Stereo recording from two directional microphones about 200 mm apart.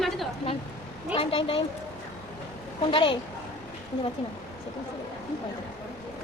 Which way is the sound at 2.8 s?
25° left (ahead or behind).